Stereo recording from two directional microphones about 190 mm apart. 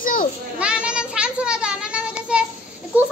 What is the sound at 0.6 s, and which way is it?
Child singing, 5° right (ahead or behind).